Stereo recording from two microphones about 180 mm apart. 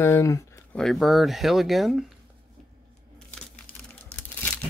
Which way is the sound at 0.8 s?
Centre (ahead or behind).